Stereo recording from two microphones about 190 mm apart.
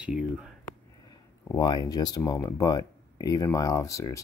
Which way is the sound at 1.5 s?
20° left (ahead or behind).